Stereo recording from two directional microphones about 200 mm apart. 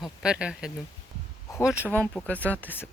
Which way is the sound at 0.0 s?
5° right (ahead or behind).